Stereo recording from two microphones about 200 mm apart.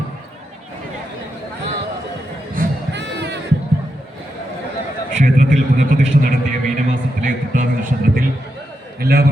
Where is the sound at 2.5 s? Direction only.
50° right (ahead or behind).